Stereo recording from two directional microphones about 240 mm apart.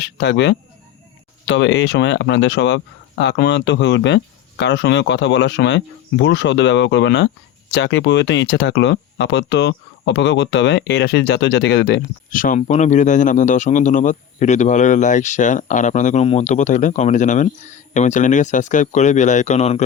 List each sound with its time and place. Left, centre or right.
0.0 s speech: left